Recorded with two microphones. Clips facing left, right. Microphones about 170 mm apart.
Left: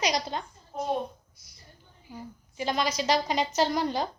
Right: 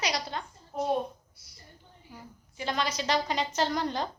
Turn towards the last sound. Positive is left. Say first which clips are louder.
# left 3 dB
turn(degrees=10)  # may be behind; listen again after turning